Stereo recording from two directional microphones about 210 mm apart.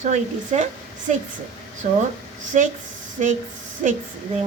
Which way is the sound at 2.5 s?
35° right (ahead or behind).